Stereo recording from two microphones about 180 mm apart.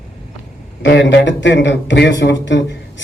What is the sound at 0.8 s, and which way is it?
Speech, 75° left (ahead or behind).